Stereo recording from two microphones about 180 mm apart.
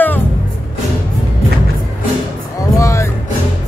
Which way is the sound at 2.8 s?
15° left (ahead or behind).